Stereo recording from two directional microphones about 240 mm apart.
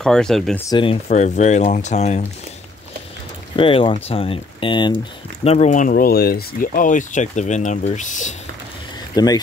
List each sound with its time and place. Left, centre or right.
0.0 s speech: centre
0.7 s speech: left
3.5 s speech: left
9.1 s speech: centre